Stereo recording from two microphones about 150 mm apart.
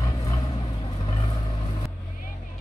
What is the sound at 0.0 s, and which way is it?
Vehicle, 25° left (ahead or behind).